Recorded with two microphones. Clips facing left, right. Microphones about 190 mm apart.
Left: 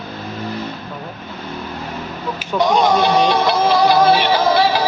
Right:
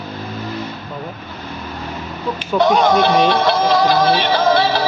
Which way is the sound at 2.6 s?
10° left (ahead or behind).